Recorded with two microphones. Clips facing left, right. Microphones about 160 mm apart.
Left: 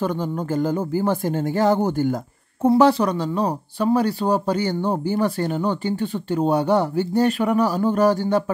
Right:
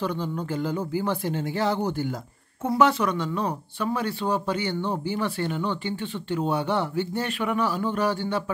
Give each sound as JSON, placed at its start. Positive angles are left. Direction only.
{"t": 0.0, "sound": "speech", "side_deg": 45}
{"t": 2.6, "sound": "speech", "side_deg": 35}